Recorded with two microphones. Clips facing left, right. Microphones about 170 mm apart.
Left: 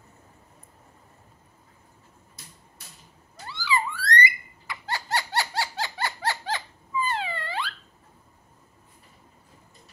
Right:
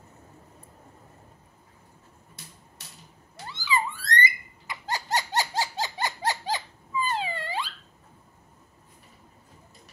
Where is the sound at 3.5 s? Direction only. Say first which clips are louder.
Left 1 dB; 20° right (ahead or behind).